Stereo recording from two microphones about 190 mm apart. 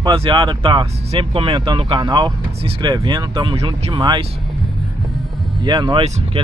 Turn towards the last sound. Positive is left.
turn(degrees=-30)  # may be behind; listen again after turning